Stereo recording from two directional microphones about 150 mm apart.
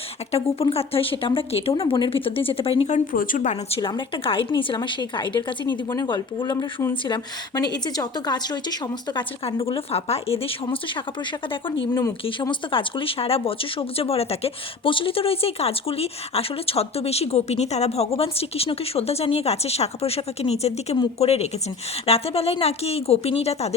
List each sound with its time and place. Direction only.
0.3 s speech: 40° left (ahead or behind)
3.1 s a woman's voice: 65° left (ahead or behind)
3.8 s a woman's voice: 30° left (ahead or behind)